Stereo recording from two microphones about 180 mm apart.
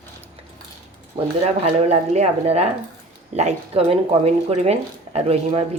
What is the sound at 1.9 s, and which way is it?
Speech, 35° right (ahead or behind).